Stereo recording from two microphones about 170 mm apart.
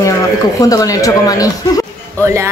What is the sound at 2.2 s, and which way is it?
Speech, 15° right (ahead or behind).